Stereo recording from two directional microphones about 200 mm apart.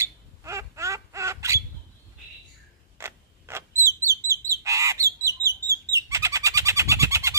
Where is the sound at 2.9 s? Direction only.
15° right (ahead or behind).